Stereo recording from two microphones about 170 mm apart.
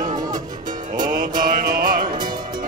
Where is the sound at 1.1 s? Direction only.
55° right (ahead or behind).